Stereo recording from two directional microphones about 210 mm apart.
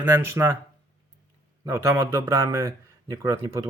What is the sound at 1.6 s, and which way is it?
A man's voice, 15° right (ahead or behind).